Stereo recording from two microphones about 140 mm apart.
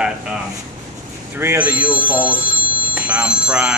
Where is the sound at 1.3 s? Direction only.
15° right (ahead or behind).